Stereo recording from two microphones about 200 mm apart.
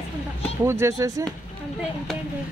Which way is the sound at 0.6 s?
15° right (ahead or behind).